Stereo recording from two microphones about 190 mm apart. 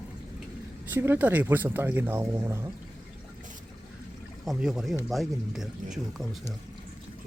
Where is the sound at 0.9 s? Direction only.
10° right (ahead or behind).